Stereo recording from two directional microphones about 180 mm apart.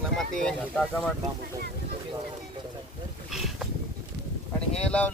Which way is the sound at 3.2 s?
Centre (ahead or behind).